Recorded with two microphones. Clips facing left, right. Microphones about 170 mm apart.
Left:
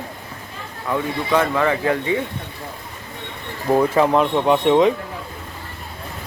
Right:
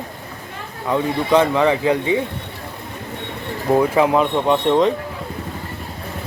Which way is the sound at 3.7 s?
10° right (ahead or behind).